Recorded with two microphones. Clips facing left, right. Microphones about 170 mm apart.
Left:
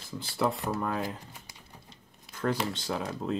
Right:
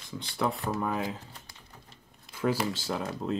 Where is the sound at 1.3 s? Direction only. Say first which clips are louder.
Left 1 dB; 15° left (ahead or behind).